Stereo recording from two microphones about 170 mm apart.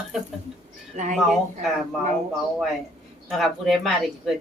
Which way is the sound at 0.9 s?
45° right (ahead or behind).